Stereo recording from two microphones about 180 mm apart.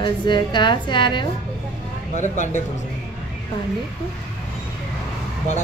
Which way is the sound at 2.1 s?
40° left (ahead or behind).